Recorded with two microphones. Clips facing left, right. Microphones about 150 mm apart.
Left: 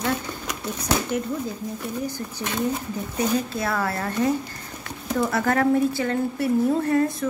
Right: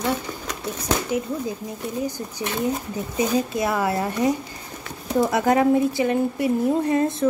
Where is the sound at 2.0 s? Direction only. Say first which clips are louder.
Right 2 dB; 15° right (ahead or behind).